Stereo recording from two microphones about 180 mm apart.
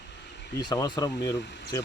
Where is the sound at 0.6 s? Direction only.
20° left (ahead or behind).